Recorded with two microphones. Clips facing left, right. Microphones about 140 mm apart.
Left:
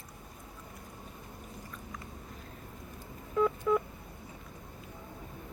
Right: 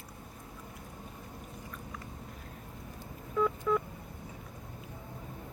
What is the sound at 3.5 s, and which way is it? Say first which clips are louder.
Telephone dialing: left 2 dB; 15° left (ahead or behind).